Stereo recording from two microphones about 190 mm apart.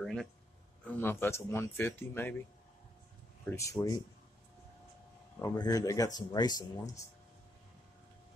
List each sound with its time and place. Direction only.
0.0 s a sound: 5° left (ahead or behind)
0.9 s speech: 10° left (ahead or behind)
3.4 s speech: 15° left (ahead or behind)
5.4 s speech: 20° left (ahead or behind)